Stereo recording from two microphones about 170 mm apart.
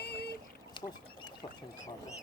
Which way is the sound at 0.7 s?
25° left (ahead or behind).